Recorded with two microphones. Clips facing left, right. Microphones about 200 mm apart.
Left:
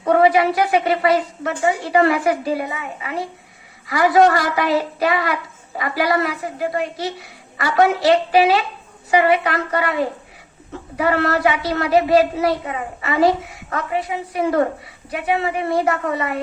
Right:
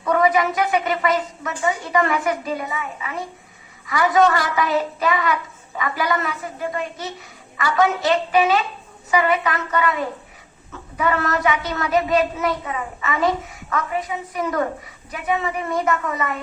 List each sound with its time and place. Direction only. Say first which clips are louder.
0.0 s a woman's voice: left 4 dB; 35° left (ahead or behind)